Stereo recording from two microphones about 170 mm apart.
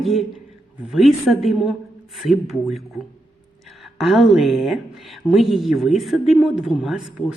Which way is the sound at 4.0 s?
Centre (ahead or behind).